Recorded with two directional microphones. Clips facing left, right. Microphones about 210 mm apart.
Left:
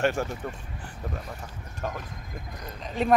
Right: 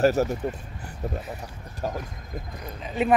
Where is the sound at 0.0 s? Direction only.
40° right (ahead or behind).